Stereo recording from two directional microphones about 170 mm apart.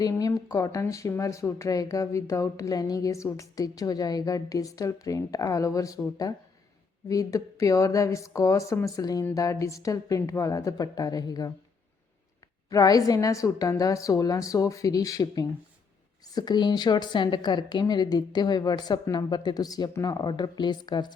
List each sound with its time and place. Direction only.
0.0 s speech: 20° left (ahead or behind)
12.7 s speech: 20° left (ahead or behind)